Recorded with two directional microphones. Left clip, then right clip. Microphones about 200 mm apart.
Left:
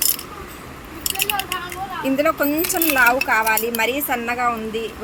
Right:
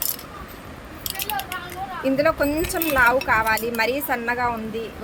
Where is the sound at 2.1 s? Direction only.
25° right (ahead or behind).